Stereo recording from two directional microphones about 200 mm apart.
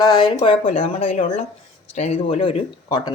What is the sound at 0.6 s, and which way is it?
Speech, 40° left (ahead or behind).